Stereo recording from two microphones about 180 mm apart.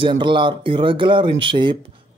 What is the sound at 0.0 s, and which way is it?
A man's voice, 25° right (ahead or behind).